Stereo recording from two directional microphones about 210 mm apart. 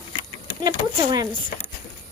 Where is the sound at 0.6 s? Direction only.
20° right (ahead or behind).